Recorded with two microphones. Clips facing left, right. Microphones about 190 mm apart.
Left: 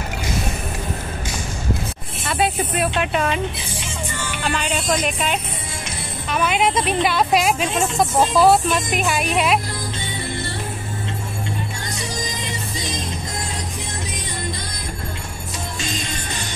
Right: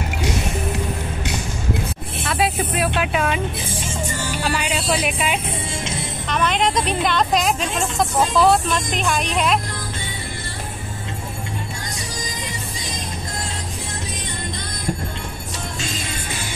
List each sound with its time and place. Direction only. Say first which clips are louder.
2.2 s speech: even; centre (ahead or behind)
3.8 s music: right 2 dB; 40° right (ahead or behind)
4.4 s speech: left 1 dB; 10° right (ahead or behind)
6.2 s a woman's voice: left 1 dB; 5° left (ahead or behind)